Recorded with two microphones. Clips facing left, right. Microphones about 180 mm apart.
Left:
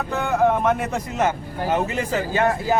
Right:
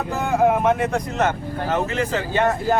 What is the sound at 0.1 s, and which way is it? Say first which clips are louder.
Speech: right 1 dB; 5° right (ahead or behind).